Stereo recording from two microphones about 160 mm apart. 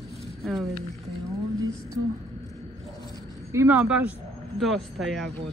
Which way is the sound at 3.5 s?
10° right (ahead or behind).